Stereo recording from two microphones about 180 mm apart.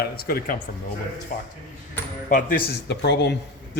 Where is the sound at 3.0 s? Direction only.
70° left (ahead or behind).